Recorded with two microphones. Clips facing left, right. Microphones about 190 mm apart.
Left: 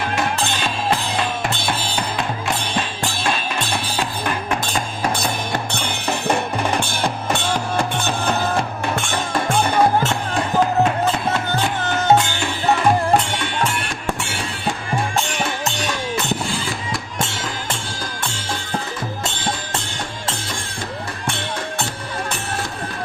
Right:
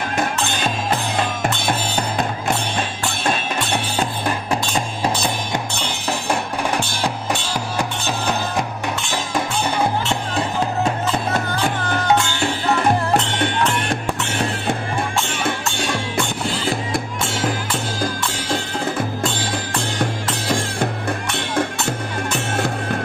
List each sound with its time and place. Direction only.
3.9 s music: 35° right (ahead or behind)
6.1 s music: 10° right (ahead or behind)
9.5 s music: 50° left (ahead or behind)
12.0 s music: 20° left (ahead or behind)